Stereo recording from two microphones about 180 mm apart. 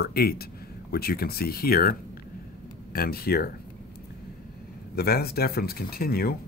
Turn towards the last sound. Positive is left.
turn(degrees=55)  # may be behind; listen again after turning